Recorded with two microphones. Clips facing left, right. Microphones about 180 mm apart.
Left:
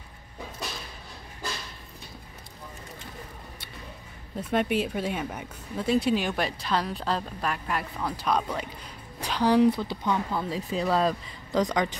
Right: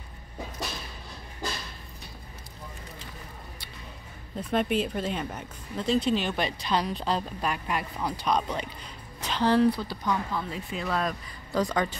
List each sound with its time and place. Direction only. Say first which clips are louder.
4.4 s speech: left 1 dB; 10° left (ahead or behind)